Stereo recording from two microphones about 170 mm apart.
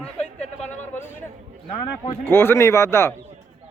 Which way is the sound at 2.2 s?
15° left (ahead or behind).